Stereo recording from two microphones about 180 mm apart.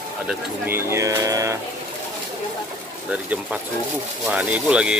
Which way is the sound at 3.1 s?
5° right (ahead or behind).